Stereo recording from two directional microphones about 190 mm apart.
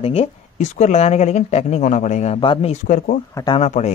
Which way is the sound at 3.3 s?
25° left (ahead or behind).